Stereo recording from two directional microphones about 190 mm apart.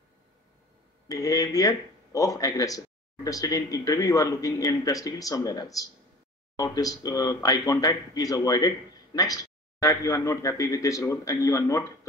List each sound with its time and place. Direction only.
1.0 s speech: 20° left (ahead or behind)